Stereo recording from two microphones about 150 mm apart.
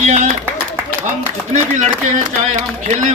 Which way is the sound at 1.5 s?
50° right (ahead or behind).